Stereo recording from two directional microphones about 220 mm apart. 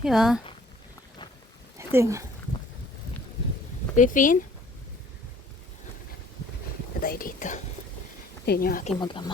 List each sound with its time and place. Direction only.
0.0 s speech: centre (ahead or behind)
1.9 s speech: 10° right (ahead or behind)
3.9 s speech: 35° left (ahead or behind)
7.0 s speech: 40° left (ahead or behind)
9.0 s speech: 20° left (ahead or behind)